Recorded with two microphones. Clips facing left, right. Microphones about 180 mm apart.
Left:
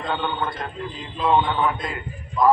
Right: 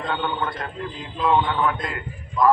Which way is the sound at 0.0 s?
20° left (ahead or behind).